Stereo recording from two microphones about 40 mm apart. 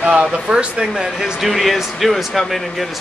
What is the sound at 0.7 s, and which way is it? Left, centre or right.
Speech, centre.